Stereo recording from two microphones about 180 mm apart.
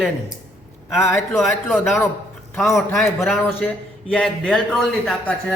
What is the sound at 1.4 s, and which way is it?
A man's voice, centre (ahead or behind).